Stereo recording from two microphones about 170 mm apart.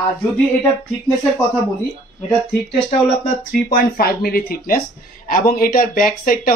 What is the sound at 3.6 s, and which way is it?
Speech, 60° left (ahead or behind).